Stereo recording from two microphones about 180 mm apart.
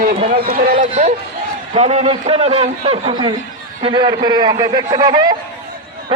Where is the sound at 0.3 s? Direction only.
55° right (ahead or behind).